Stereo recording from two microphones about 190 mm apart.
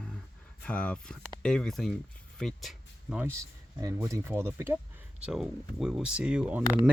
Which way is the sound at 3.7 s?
15° right (ahead or behind).